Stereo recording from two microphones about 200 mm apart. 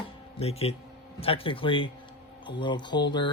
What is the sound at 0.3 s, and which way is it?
Speech, 30° left (ahead or behind).